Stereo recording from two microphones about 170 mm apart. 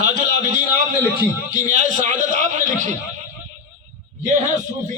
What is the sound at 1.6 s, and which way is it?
A man's voice, 45° right (ahead or behind).